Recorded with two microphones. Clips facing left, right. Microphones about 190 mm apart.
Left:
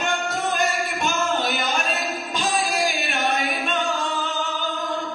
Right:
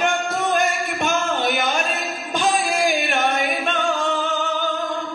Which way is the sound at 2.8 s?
55° right (ahead or behind).